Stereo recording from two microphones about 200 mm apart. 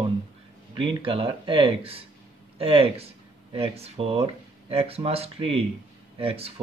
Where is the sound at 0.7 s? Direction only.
25° right (ahead or behind).